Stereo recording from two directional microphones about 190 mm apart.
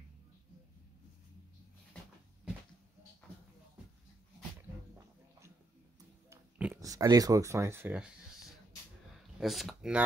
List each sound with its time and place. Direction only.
6.3 s speech: 15° right (ahead or behind)
9.4 s speech: centre (ahead or behind)